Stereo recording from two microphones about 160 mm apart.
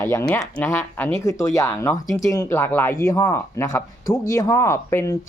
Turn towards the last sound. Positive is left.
turn(degrees=20)  # may be behind; listen again after turning